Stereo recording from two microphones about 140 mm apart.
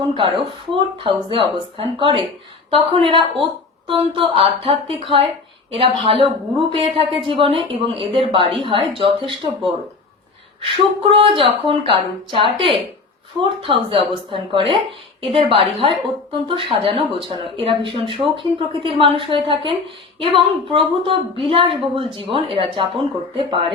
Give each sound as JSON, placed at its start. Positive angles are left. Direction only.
{"t": 0.1, "sound": "a woman's voice", "side_deg": -40}